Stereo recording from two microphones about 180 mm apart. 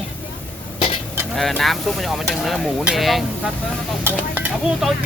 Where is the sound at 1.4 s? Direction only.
Centre (ahead or behind).